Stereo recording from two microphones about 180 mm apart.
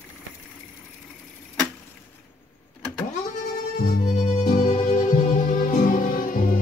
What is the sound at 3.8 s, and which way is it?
Music, 40° left (ahead or behind).